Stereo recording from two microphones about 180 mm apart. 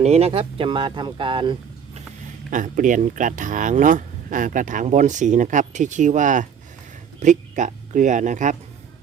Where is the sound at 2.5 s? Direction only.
45° right (ahead or behind).